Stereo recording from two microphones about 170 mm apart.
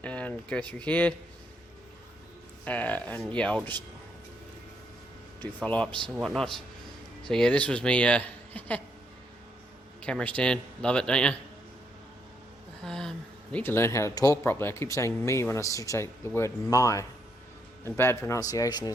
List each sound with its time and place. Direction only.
0.0 s speech: 10° left (ahead or behind)
2.6 s speech: 10° left (ahead or behind)
5.6 s a man's voice: 10° left (ahead or behind)
10.0 s a man's voice: 5° left (ahead or behind)
12.8 s a man's voice: 5° left (ahead or behind); by 18.9 s 20° left (ahead or behind)